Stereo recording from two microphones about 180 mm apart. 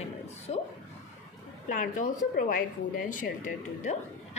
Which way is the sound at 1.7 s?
45° left (ahead or behind).